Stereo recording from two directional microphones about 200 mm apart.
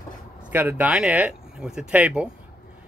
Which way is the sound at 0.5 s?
10° right (ahead or behind).